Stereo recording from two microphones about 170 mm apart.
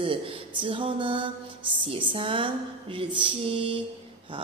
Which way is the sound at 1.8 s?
30° right (ahead or behind).